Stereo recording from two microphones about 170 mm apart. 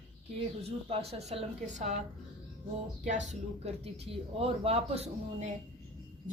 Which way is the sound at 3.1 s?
45° right (ahead or behind).